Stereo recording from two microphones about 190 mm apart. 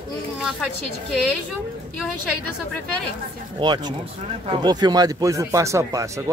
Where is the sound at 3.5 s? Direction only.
25° right (ahead or behind).